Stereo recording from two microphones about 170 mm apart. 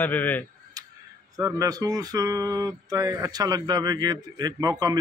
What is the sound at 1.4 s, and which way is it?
Speech, 20° right (ahead or behind).